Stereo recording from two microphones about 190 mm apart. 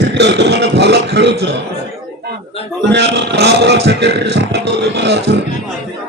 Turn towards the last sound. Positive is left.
turn(degrees=-65)  # may be behind; listen again after turning